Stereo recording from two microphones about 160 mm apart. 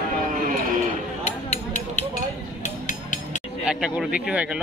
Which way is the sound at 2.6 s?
50° left (ahead or behind).